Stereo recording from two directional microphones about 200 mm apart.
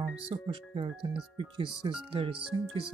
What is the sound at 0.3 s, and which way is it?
Speech, 25° right (ahead or behind).